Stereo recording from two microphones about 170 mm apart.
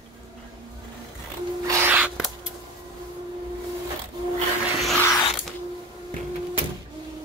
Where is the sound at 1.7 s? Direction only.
10° right (ahead or behind).